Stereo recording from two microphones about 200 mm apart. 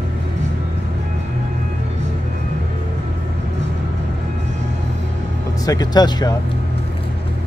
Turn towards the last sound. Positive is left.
turn(degrees=20)  # may be behind; listen again after turning